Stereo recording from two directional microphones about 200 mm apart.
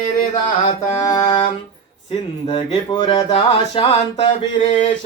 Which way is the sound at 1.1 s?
20° left (ahead or behind).